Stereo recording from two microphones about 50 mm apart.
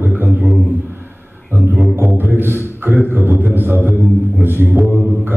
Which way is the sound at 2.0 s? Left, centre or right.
Right.